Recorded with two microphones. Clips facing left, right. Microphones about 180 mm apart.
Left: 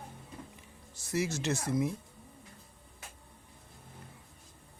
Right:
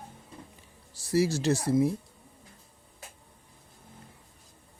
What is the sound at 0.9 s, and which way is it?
Speech, 35° right (ahead or behind).